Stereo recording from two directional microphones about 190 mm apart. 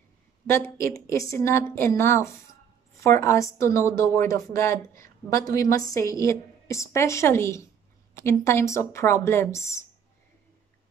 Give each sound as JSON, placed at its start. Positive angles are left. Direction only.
{"t": 0.5, "sound": "speech", "side_deg": 15}